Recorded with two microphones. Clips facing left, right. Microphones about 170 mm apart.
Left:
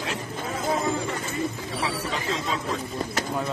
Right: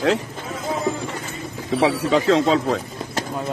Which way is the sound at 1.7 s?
85° right.